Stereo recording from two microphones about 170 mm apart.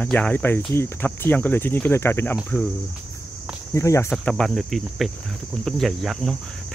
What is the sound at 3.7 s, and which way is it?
Cricket, 15° left (ahead or behind).